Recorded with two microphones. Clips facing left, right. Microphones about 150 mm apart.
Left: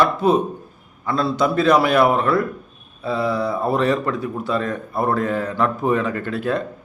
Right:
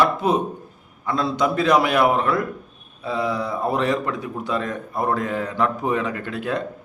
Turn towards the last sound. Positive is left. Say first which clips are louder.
# left 3 dB
turn(degrees=-15)  # may be behind; listen again after turning